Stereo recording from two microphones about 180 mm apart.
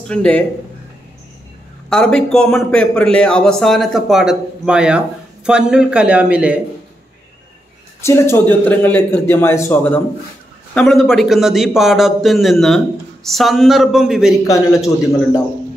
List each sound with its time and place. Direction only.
0.1 s a man's voice: 5° left (ahead or behind)
1.9 s a man's voice: 5° left (ahead or behind)
8.0 s a man's voice: 15° left (ahead or behind); by 14.3 s centre (ahead or behind)
14.4 s a man's voice: 20° left (ahead or behind)